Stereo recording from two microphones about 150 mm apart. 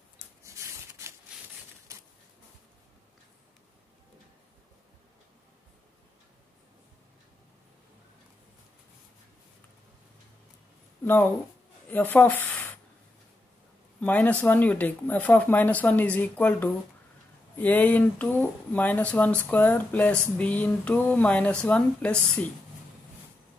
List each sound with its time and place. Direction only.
0.6 s a sound: 20° right (ahead or behind)
11.1 s speech: 10° left (ahead or behind)
13.9 s speech: 10° left (ahead or behind)